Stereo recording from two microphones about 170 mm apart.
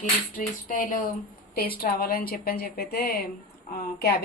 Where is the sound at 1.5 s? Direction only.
60° left (ahead or behind).